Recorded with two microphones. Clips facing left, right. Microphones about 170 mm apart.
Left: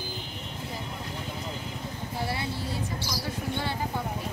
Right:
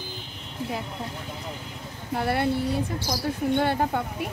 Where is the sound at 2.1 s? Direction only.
60° right (ahead or behind).